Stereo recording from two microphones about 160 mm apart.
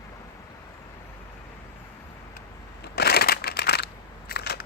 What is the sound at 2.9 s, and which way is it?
Crushing, 80° left.